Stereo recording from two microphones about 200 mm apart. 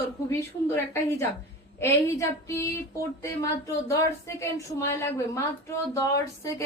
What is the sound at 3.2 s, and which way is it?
Speech, 15° left (ahead or behind).